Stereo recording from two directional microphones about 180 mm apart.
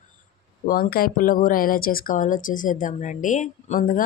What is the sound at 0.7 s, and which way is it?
Speech, 55° left (ahead or behind).